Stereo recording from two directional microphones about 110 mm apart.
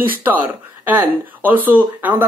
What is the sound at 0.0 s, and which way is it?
Speech, 15° right (ahead or behind).